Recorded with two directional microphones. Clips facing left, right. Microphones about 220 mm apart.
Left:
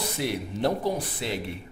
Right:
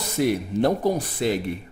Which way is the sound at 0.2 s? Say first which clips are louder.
Right 8 dB; 45° right (ahead or behind).